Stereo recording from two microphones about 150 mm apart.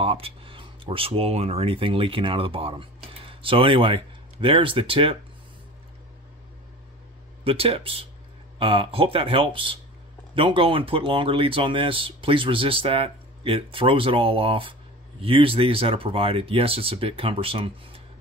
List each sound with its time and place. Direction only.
0.0 s speech: 40° right (ahead or behind)
7.4 s speech: 40° right (ahead or behind)